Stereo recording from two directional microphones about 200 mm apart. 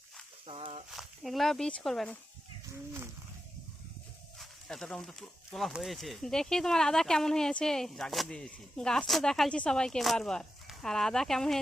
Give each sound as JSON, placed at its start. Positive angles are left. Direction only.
{"t": 0.4, "sound": "a sound", "side_deg": -30}
{"t": 0.9, "sound": "speech", "side_deg": 0}
{"t": 4.4, "sound": "speech", "side_deg": 0}